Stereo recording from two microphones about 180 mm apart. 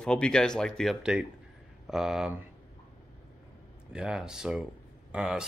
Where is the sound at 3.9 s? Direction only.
5° right (ahead or behind).